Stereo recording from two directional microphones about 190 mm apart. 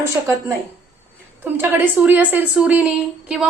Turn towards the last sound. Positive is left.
turn(degrees=-5)  # may be behind; listen again after turning